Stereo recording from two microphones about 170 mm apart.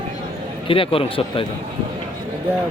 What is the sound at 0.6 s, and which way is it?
Speech, 30° left (ahead or behind).